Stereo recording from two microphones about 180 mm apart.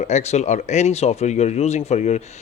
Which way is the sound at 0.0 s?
40° left (ahead or behind).